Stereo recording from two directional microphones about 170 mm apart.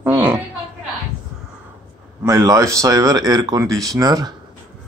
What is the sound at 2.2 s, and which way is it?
Speech, 20° right (ahead or behind).